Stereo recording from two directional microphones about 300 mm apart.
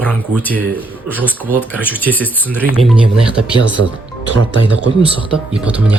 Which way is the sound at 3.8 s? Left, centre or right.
Right.